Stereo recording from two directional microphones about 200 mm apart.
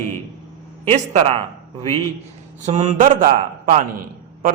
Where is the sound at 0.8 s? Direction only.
35° right (ahead or behind).